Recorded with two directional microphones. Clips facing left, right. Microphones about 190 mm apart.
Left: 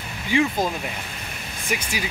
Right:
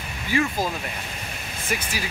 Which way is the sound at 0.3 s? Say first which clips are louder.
Left 3 dB; 20° left (ahead or behind).